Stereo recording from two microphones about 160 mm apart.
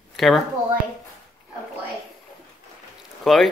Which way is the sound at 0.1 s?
Centre (ahead or behind).